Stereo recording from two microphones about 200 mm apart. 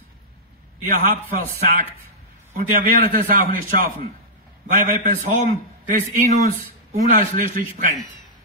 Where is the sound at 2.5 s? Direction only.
45° right (ahead or behind).